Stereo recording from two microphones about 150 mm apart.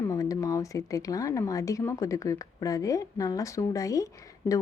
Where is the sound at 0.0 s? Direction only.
20° left (ahead or behind).